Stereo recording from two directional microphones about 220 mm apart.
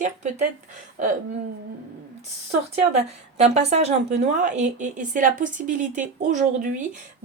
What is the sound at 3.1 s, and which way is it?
A woman's voice, 30° right (ahead or behind).